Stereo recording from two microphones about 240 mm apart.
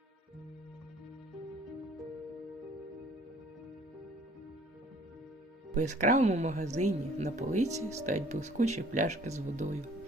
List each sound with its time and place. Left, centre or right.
5.7 s speech: right